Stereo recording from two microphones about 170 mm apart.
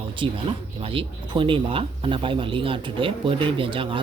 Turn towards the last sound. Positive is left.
turn(degrees=-30)  # may be behind; listen again after turning